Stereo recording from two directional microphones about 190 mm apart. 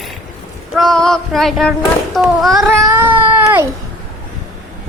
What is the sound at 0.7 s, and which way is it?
Child singing, centre (ahead or behind).